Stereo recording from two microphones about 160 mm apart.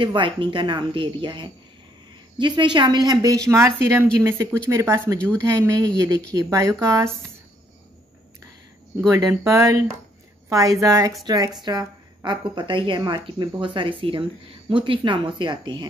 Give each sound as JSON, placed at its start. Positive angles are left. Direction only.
{"t": 0.0, "sound": "a woman's voice", "side_deg": -30}
{"t": 9.1, "sound": "a woman's voice", "side_deg": -20}